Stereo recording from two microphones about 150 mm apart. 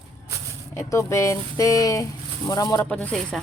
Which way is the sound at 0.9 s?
20° left (ahead or behind).